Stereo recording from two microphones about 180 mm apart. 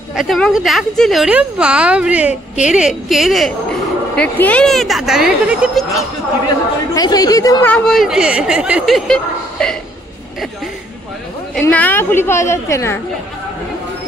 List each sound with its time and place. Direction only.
0.1 s speech: centre (ahead or behind)
6.9 s speech: 20° left (ahead or behind)
7.6 s speech: 5° left (ahead or behind)
11.5 s speech: 10° left (ahead or behind)